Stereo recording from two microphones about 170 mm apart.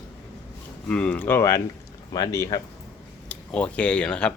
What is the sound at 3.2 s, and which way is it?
Speech, 5° left (ahead or behind).